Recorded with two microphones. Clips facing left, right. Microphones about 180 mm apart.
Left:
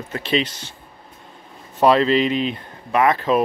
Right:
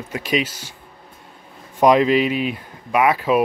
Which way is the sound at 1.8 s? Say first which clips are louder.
Right 1 dB; 15° right (ahead or behind).